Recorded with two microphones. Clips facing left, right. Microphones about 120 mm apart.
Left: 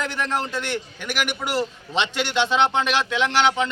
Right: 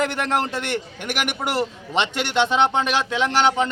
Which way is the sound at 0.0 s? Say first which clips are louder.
Right 4 dB; 65° right (ahead or behind).